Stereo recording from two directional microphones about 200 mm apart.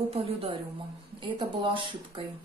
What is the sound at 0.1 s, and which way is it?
A woman's voice, 25° right (ahead or behind).